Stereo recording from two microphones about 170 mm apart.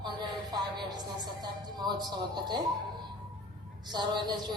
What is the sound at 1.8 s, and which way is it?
Speech, 25° right (ahead or behind).